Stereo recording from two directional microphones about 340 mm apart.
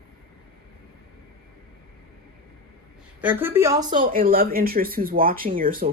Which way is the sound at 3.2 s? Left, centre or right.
Centre.